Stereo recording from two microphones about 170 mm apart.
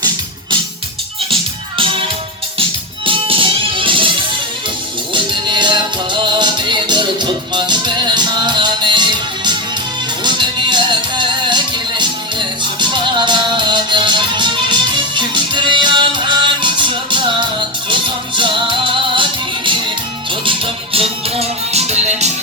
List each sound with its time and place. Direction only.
1.8 s music: 30° right (ahead or behind)
3.1 s music: 30° right (ahead or behind)
5.1 s music: 30° right (ahead or behind)